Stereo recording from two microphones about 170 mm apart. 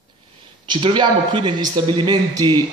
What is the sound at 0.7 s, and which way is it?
A man's voice, 30° right (ahead or behind).